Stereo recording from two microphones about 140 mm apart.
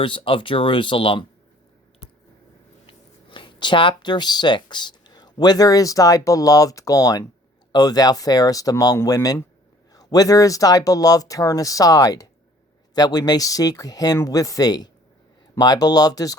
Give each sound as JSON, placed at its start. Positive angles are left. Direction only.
{"t": 0.0, "sound": "speech", "side_deg": 40}
{"t": 2.8, "sound": "speech", "side_deg": 35}